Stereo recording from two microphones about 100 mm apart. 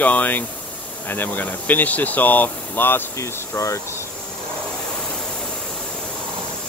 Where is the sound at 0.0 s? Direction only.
15° left (ahead or behind).